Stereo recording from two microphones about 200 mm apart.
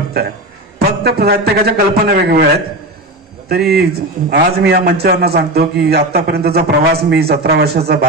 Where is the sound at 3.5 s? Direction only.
50° right (ahead or behind).